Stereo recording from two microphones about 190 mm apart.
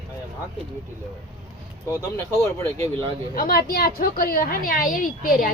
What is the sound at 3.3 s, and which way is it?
A woman's voice, 50° left (ahead or behind).